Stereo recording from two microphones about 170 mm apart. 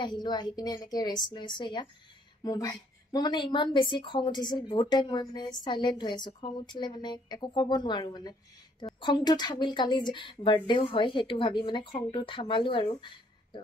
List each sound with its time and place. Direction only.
0.0 s a woman's voice: 25° left (ahead or behind)